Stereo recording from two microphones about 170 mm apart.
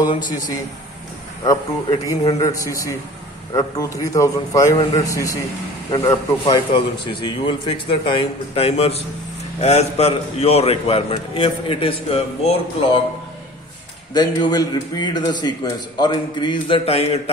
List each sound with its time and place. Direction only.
0.0 s a man's voice: 25° left (ahead or behind)
2.0 s a man's voice: 20° left (ahead or behind)
14.1 s a man's voice: 25° left (ahead or behind)